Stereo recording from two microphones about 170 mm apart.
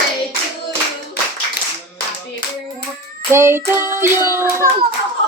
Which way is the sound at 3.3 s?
15° right (ahead or behind).